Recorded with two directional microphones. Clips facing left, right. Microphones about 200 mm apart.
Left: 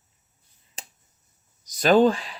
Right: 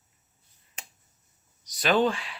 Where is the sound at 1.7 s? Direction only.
40° left (ahead or behind).